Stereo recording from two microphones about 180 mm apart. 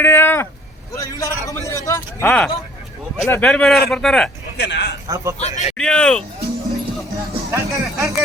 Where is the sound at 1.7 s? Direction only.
20° left (ahead or behind).